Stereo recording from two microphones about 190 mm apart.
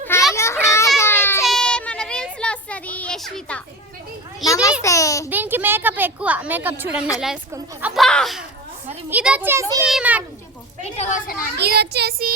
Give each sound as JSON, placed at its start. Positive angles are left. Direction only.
{"t": 0.3, "sound": "children playing", "side_deg": 15}
{"t": 1.4, "sound": "a sound", "side_deg": 0}
{"t": 4.4, "sound": "a sound", "side_deg": 15}
{"t": 4.8, "sound": "babbling", "side_deg": 15}
{"t": 5.3, "sound": "a woman's voice", "side_deg": -10}
{"t": 10.8, "sound": "a woman's voice", "side_deg": 35}
{"t": 11.5, "sound": "a child's voice", "side_deg": -60}